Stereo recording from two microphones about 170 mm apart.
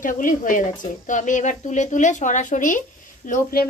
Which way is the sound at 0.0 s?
50° left (ahead or behind).